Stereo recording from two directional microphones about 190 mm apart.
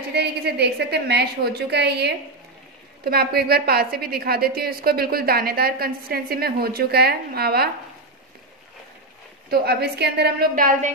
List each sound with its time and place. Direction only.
0.1 s a woman's voice: 60° right (ahead or behind)
9.5 s a woman's voice: 55° right (ahead or behind)